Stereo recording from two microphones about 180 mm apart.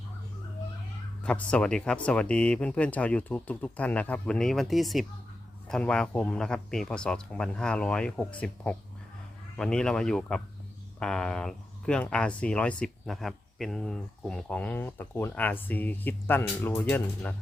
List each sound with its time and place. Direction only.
1.2 s speech: 5° left (ahead or behind)